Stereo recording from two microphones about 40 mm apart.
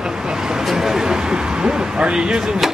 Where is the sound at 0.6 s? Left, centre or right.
Centre.